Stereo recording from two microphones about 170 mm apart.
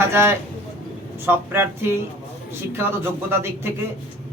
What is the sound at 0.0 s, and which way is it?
Speech, 15° right (ahead or behind).